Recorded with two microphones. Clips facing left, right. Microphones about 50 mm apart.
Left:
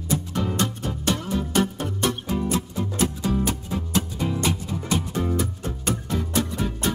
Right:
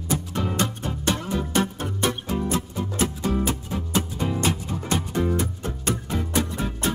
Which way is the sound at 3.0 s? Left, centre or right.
Right.